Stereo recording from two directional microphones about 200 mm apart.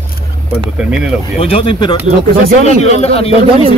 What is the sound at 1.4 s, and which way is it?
Speech, 30° left (ahead or behind).